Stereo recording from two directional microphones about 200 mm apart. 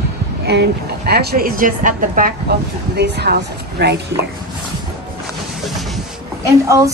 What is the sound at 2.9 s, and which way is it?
A woman's voice, 55° right (ahead or behind).